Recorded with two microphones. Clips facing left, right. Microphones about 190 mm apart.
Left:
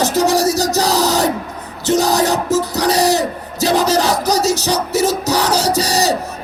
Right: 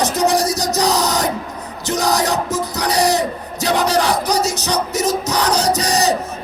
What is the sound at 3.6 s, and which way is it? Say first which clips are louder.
Music: left 2 dB; 35° left (ahead or behind).